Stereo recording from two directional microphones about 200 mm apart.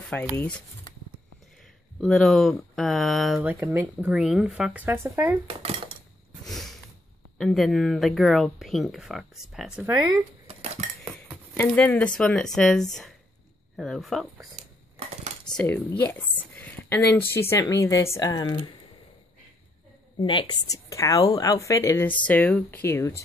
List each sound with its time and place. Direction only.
0.1 s speech: 5° left (ahead or behind)
2.0 s speech: centre (ahead or behind)
3.5 s speech: 15° right (ahead or behind)
5.5 s speech: 30° right (ahead or behind)
6.4 s a sound: centre (ahead or behind)
7.3 s speech: centre (ahead or behind)
10.4 s dishes: 30° right (ahead or behind)
11.5 s speech: 5° left (ahead or behind)
14.6 s a sound: 35° right (ahead or behind)
15.5 s speech: 10° left (ahead or behind)
20.2 s speech: 25° left (ahead or behind)